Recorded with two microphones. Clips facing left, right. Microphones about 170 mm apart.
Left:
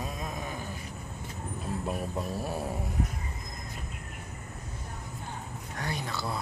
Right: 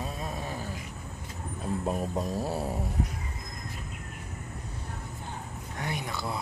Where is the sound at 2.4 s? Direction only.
15° left (ahead or behind).